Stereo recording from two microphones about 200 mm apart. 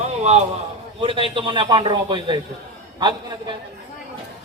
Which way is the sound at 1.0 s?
25° right (ahead or behind).